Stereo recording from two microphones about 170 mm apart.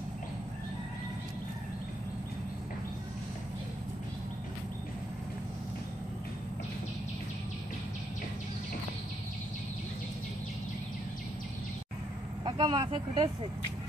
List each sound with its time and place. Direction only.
12.4 s speech: 30° right (ahead or behind)